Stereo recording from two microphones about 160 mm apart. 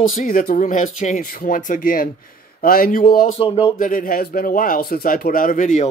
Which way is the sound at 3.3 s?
35° left (ahead or behind).